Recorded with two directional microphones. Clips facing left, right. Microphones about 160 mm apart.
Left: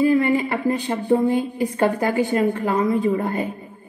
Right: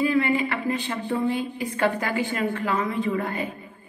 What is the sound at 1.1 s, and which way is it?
A woman's voice, 40° left (ahead or behind).